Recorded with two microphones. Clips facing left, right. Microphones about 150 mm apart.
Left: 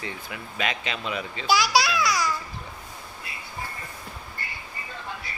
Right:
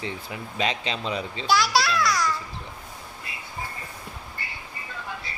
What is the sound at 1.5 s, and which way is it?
Babbling, centre (ahead or behind).